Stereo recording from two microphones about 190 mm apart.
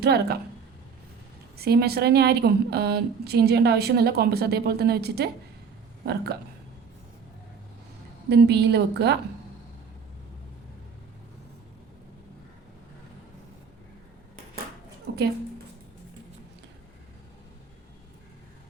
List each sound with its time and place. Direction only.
0.0 s a woman's voice: 55° right (ahead or behind)
1.5 s a woman's voice: 55° right (ahead or behind)
8.3 s a woman's voice: 60° right (ahead or behind)
15.1 s a woman's voice: 60° right (ahead or behind)